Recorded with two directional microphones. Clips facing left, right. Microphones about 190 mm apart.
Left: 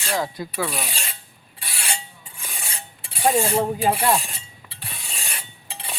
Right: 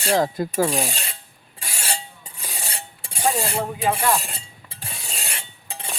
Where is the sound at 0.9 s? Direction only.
40° right (ahead or behind).